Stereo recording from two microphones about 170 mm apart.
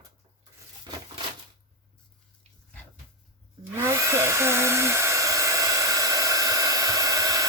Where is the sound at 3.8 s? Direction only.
15° right (ahead or behind).